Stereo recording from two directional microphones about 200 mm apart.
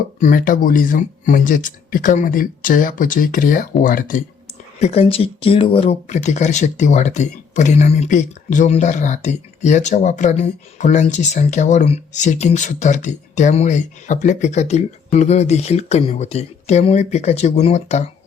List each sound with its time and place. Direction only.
0.2 s speech: 40° left (ahead or behind)
4.8 s speech: 30° left (ahead or behind)